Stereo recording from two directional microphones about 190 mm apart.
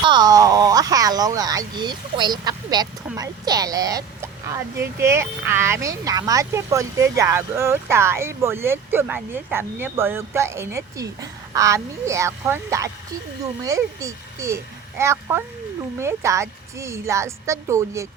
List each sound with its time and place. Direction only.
0.0 s speech: 25° right (ahead or behind)